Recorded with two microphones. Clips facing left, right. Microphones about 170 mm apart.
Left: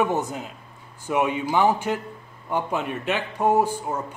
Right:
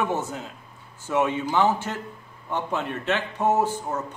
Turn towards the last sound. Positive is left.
turn(degrees=10)  # may be behind; listen again after turning